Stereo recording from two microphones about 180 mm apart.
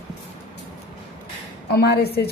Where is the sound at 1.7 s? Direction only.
60° left (ahead or behind).